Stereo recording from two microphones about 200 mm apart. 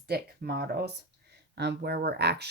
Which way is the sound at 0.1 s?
50° right (ahead or behind).